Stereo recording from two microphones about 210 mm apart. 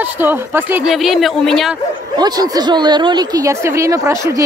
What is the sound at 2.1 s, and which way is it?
A woman's voice, 20° right (ahead or behind).